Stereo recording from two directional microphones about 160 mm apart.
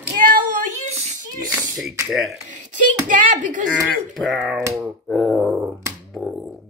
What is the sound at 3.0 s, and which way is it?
Speech, 55° right (ahead or behind).